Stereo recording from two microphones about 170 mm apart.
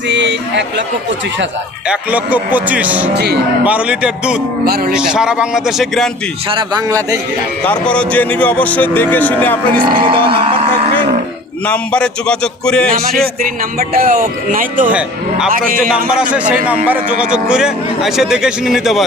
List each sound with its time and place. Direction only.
0.1 s speech: 90° right
1.9 s speech: 10° right (ahead or behind)
3.2 s speech: 75° right (ahead or behind)
3.6 s speech: 10° right (ahead or behind)
4.6 s a man's voice: 65° right (ahead or behind)
4.9 s a man's voice: 5° right (ahead or behind)
6.5 s speech: 30° right (ahead or behind)
7.6 s speech: 5° left (ahead or behind)
9.7 s speech: 30° right (ahead or behind)
11.7 s a man's voice: 5° left (ahead or behind)
13.4 s a man's voice: 55° right (ahead or behind)
16.6 s a man's voice: 10° right (ahead or behind)